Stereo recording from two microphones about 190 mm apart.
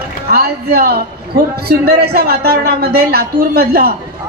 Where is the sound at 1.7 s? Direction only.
55° right (ahead or behind).